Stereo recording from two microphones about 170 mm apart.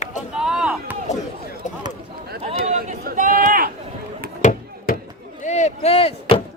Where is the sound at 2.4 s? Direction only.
40° right (ahead or behind).